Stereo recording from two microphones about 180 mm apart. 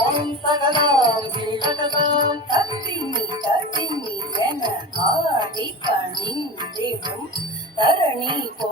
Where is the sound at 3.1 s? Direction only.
25° right (ahead or behind).